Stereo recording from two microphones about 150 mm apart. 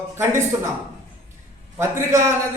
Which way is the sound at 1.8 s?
20° right (ahead or behind).